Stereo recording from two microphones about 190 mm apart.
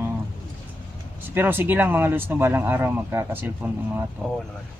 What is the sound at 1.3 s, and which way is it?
Speech, 10° right (ahead or behind).